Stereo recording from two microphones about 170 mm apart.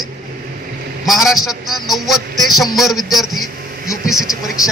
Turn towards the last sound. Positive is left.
turn(degrees=0)  # may be behind; listen again after turning